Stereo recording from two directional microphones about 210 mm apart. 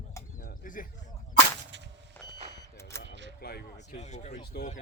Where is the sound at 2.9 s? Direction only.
10° left (ahead or behind).